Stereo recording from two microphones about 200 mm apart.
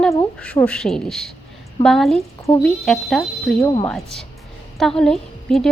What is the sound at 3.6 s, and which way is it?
Speech, 20° left (ahead or behind).